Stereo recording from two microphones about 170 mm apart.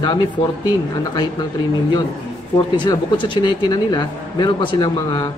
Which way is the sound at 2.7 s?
25° left (ahead or behind).